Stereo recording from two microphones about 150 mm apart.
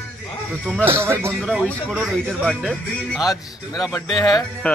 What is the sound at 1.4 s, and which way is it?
Speech, centre (ahead or behind).